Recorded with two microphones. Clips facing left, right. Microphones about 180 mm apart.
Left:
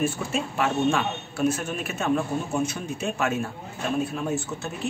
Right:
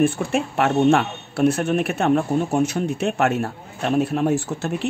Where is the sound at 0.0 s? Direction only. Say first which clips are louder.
Right 7 dB; 65° right (ahead or behind).